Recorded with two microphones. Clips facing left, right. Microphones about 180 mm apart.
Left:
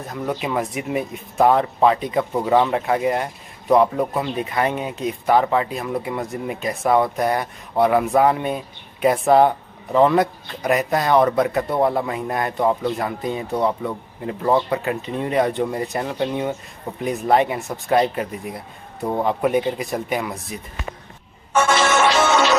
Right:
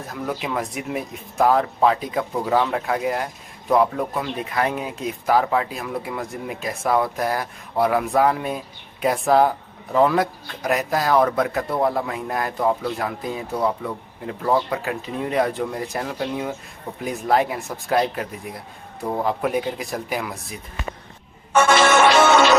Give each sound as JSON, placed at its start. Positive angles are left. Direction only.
{"t": 0.0, "sound": "speech", "side_deg": 0}
{"t": 21.5, "sound": "music", "side_deg": -60}